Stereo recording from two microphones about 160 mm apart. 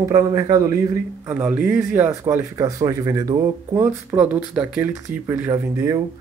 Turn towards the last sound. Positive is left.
turn(degrees=-20)  # may be behind; listen again after turning